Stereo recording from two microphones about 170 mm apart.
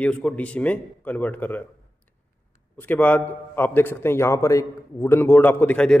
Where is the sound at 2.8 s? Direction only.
10° left (ahead or behind).